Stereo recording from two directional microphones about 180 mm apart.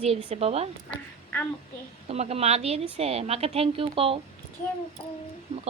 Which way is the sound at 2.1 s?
35° right (ahead or behind).